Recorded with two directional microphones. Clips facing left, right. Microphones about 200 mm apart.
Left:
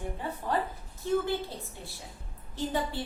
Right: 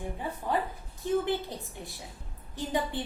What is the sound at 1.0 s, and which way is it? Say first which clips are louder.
Speech: even; 15° right (ahead or behind).